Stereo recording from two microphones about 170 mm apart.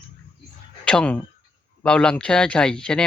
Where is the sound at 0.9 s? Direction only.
5° left (ahead or behind).